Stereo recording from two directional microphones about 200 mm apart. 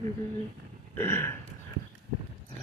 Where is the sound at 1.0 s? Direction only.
10° left (ahead or behind).